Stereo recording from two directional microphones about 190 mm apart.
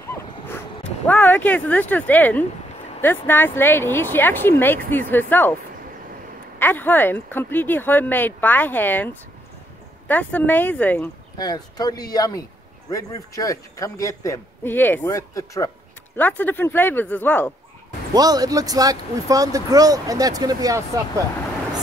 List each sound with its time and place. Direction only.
1.0 s a man's voice: 10° left (ahead or behind)
6.6 s a man's voice: 10° left (ahead or behind)
11.3 s a man's voice: 20° left (ahead or behind)
18.1 s speech: 20° right (ahead or behind)